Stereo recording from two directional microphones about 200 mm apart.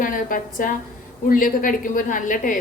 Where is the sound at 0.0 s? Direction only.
45° left (ahead or behind).